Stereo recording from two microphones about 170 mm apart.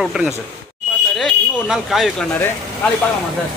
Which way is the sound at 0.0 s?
5° right (ahead or behind).